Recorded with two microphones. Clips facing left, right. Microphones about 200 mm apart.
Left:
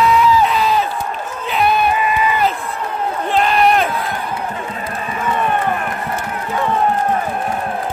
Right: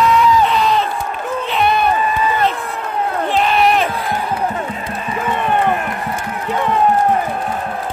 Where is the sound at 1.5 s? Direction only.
Centre (ahead or behind).